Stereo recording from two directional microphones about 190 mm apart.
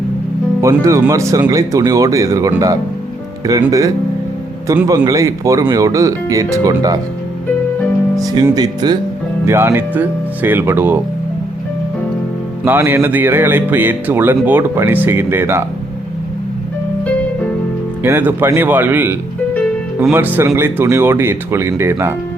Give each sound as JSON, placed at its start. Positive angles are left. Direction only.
{"t": 0.6, "sound": "speech", "side_deg": -15}
{"t": 8.1, "sound": "speech", "side_deg": -20}
{"t": 12.6, "sound": "speech", "side_deg": -10}
{"t": 18.0, "sound": "speech", "side_deg": -10}